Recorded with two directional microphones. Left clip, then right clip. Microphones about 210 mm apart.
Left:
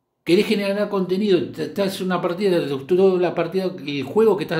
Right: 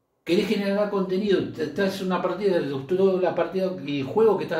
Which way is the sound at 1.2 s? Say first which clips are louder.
Left 4 dB; 55° left (ahead or behind).